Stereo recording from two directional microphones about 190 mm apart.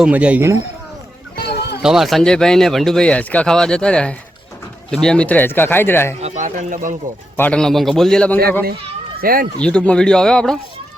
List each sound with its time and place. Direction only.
0.0 s speech: 5° right (ahead or behind)
1.8 s speech: centre (ahead or behind)
6.1 s speech: 35° right (ahead or behind)
7.3 s speech: 5° left (ahead or behind)
9.2 s speech: 50° right (ahead or behind)
9.6 s speech: 5° left (ahead or behind)